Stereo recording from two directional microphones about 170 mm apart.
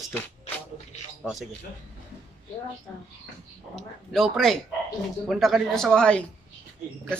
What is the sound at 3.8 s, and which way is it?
Speech, centre (ahead or behind).